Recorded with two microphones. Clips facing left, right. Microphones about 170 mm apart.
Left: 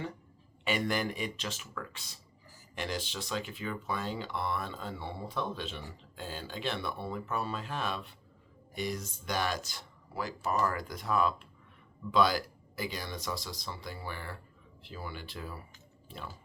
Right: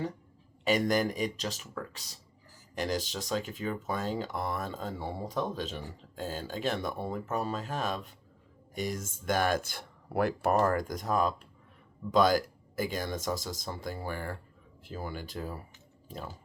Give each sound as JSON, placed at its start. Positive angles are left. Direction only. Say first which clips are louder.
{"t": 0.6, "sound": "speech", "louder": "right 5 dB", "side_deg": -40}